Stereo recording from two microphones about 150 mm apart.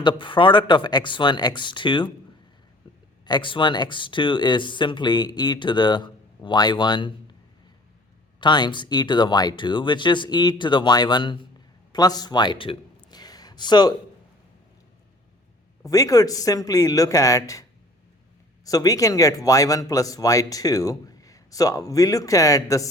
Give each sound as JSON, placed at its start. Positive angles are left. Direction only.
{"t": 0.0, "sound": "speech", "side_deg": 30}
{"t": 2.8, "sound": "a sound", "side_deg": 30}
{"t": 3.2, "sound": "speech", "side_deg": 30}
{"t": 8.4, "sound": "speech", "side_deg": 30}
{"t": 11.9, "sound": "a sound", "side_deg": 25}
{"t": 15.9, "sound": "speech", "side_deg": 25}